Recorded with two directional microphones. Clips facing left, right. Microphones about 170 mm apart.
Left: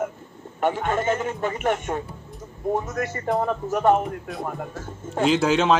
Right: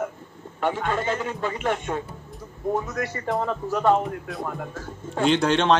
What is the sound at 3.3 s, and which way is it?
Speech, 20° left (ahead or behind).